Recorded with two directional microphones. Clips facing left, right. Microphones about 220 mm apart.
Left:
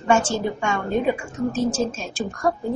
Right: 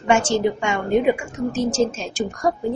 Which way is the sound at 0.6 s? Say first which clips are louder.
Right 3 dB; 15° right (ahead or behind).